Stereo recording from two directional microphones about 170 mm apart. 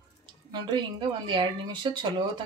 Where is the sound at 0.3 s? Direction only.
25° right (ahead or behind).